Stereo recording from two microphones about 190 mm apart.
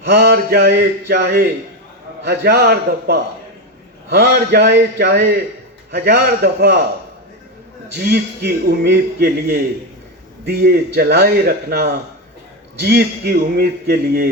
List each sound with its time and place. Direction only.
0.1 s a man's voice: 60° right (ahead or behind)
7.9 s speech: 60° right (ahead or behind)